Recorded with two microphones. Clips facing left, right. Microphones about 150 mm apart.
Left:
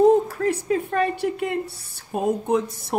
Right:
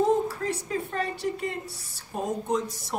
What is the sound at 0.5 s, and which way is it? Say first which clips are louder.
Speech: left 7 dB; 60° left (ahead or behind).